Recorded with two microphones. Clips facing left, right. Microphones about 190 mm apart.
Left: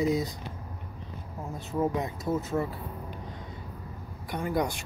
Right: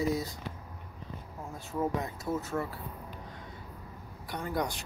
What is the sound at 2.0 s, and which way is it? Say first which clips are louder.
Speech: left 4 dB; 20° left (ahead or behind).